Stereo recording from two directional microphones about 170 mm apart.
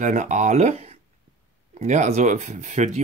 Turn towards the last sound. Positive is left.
turn(degrees=-45)  # may be behind; listen again after turning